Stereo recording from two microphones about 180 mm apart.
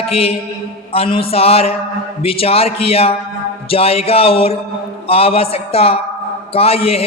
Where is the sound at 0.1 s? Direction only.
35° left (ahead or behind).